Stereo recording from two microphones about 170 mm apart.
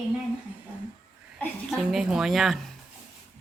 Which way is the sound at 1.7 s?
5° right (ahead or behind).